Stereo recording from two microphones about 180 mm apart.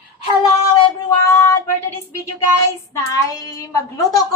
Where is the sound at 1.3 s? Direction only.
15° left (ahead or behind).